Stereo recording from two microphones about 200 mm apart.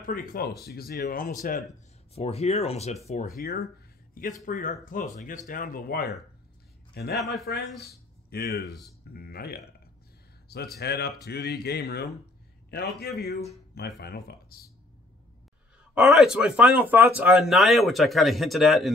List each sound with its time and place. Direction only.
0.0 s speech: 45° left (ahead or behind)
2.1 s a man's voice: 30° left (ahead or behind); by 9.6 s 50° left (ahead or behind)
10.8 s speech: 55° left (ahead or behind)
13.7 s speech: 55° left (ahead or behind)
15.9 s speech: centre (ahead or behind)